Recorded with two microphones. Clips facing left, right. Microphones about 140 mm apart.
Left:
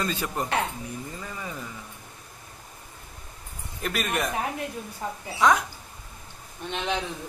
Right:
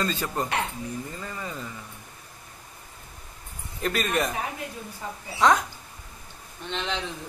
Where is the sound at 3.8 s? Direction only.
5° left (ahead or behind).